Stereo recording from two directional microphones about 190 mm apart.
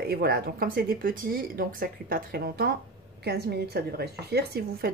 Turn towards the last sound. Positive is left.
turn(degrees=-60)  # may be behind; listen again after turning